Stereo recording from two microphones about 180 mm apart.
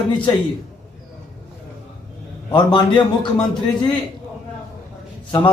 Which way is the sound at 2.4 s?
25° left (ahead or behind).